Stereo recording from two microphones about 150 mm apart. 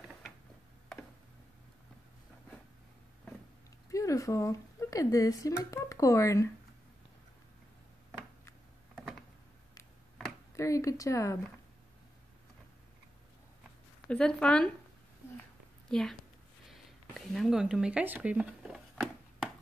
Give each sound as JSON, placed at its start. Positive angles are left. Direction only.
{"t": 3.9, "sound": "speech", "side_deg": 20}
{"t": 10.5, "sound": "speech", "side_deg": 20}
{"t": 14.0, "sound": "speech", "side_deg": 5}
{"t": 15.9, "sound": "speech", "side_deg": 5}
{"t": 16.7, "sound": "a sound", "side_deg": 0}